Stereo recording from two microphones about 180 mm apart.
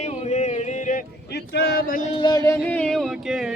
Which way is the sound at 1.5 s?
65° left (ahead or behind).